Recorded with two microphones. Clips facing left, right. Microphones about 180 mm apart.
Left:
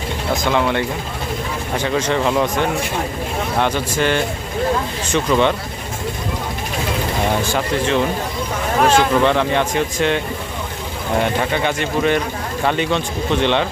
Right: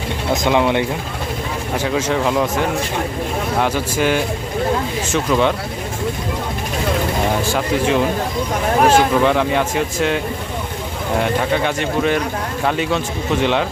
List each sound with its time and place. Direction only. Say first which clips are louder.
0.4 s speech: right 3 dB; 15° right (ahead or behind)
1.8 s speech: even; 5° right (ahead or behind)
7.5 s speech: right 1 dB; 10° right (ahead or behind)
11.2 s speech: right 1 dB; centre (ahead or behind)